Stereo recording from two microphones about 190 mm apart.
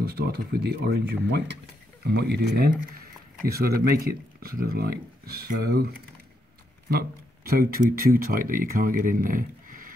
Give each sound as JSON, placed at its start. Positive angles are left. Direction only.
{"t": 0.0, "sound": "speech", "side_deg": -55}
{"t": 6.9, "sound": "speech", "side_deg": -55}